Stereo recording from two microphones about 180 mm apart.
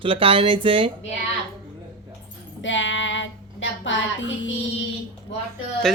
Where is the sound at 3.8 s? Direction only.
90° left.